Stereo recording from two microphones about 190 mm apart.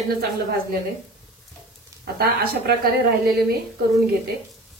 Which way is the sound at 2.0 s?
55° right (ahead or behind).